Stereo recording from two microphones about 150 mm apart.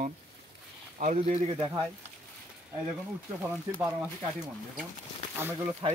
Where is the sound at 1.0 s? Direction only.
50° right (ahead or behind).